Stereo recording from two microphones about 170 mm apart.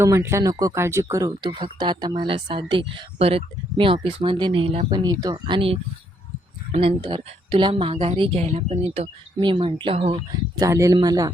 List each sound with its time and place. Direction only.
0.0 s a woman's voice: 15° right (ahead or behind); by 10.2 s 40° right (ahead or behind)
10.5 s speech: 20° right (ahead or behind)